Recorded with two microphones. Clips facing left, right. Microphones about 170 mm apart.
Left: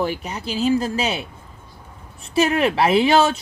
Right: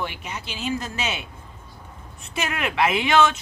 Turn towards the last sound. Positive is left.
turn(degrees=35)  # may be behind; listen again after turning